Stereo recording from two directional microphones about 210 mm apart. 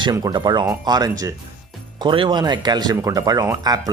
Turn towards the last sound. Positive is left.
turn(degrees=-15)  # may be behind; listen again after turning